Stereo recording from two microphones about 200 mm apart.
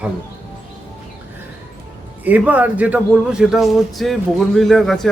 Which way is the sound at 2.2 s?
10° right (ahead or behind).